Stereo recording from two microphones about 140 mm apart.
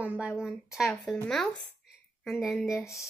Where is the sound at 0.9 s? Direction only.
10° left (ahead or behind).